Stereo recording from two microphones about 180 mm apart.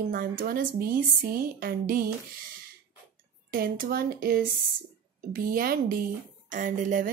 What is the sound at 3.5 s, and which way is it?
Speech, 55° right (ahead or behind).